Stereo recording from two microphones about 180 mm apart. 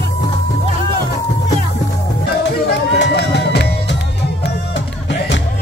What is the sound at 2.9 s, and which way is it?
Run, 75° left (ahead or behind).